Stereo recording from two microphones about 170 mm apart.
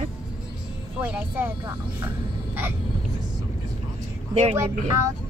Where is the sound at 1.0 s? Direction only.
10° right (ahead or behind).